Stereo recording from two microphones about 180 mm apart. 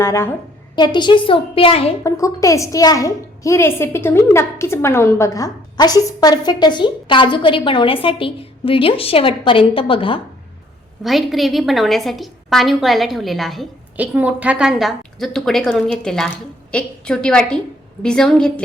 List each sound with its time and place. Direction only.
0.0 s a woman's voice: 15° left (ahead or behind)
0.8 s a woman's voice: 25° left (ahead or behind)
2.0 s a woman's voice: 15° left (ahead or behind)
11.0 s a woman's voice: centre (ahead or behind)